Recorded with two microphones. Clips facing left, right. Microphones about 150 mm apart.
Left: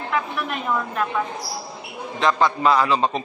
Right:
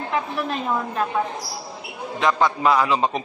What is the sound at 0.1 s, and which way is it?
A woman's voice, 30° right (ahead or behind).